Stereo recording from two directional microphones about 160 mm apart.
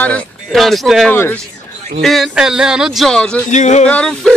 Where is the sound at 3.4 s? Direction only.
50° left (ahead or behind).